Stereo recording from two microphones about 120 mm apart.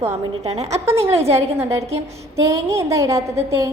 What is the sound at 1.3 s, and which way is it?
A woman's voice, 25° right (ahead or behind).